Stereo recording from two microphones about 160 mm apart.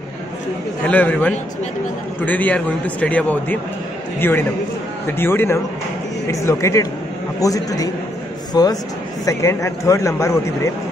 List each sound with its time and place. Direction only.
0.8 s a man's voice: 10° left (ahead or behind)